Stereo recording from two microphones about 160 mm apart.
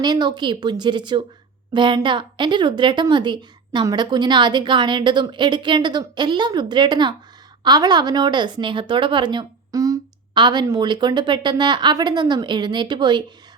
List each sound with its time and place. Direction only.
0.0 s speech: 25° right (ahead or behind)